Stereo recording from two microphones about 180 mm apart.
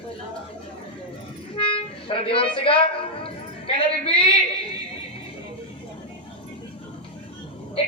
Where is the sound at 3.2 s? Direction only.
30° left (ahead or behind).